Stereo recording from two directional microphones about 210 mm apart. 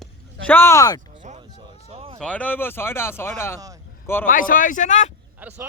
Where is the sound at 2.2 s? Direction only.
5° left (ahead or behind).